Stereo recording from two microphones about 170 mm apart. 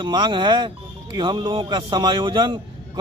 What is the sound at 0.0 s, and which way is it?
Speech, 25° right (ahead or behind).